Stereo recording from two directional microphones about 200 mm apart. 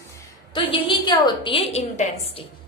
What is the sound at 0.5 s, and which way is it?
A woman's voice, 25° left (ahead or behind).